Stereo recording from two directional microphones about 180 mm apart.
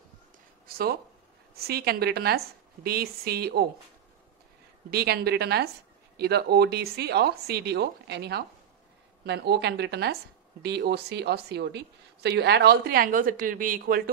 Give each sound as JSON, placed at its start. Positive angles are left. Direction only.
{"t": 0.7, "sound": "a sound", "side_deg": -60}
{"t": 1.5, "sound": "a woman's voice", "side_deg": -60}
{"t": 4.9, "sound": "a woman's voice", "side_deg": -60}